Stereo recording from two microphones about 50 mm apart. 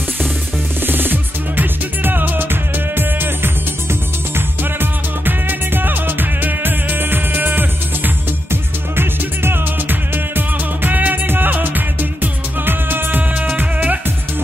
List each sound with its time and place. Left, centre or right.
0.8 s music: right